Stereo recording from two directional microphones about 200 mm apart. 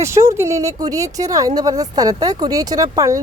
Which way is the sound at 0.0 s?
15° right (ahead or behind).